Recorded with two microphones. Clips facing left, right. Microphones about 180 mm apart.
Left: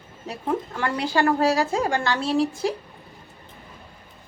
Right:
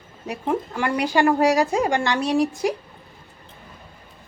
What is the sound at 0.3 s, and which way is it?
A woman's voice, 10° right (ahead or behind).